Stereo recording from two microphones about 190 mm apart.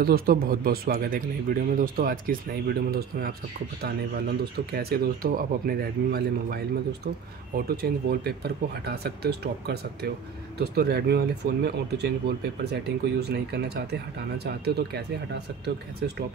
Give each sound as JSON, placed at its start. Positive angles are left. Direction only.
{"t": 0.0, "sound": "speech", "side_deg": -50}
{"t": 13.2, "sound": "speech", "side_deg": -60}